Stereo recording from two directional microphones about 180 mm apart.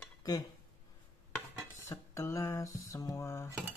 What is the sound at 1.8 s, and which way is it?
Speech, 15° left (ahead or behind).